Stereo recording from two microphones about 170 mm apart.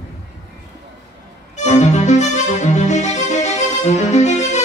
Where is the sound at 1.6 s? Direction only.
45° left (ahead or behind).